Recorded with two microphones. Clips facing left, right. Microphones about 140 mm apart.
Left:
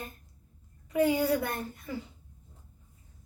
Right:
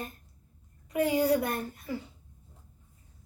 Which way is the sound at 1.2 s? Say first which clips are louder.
Right 2 dB; 35° right (ahead or behind).